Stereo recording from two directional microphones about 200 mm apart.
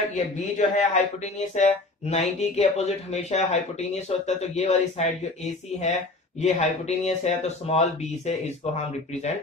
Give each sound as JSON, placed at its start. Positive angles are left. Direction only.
{"t": 0.1, "sound": "speech", "side_deg": 35}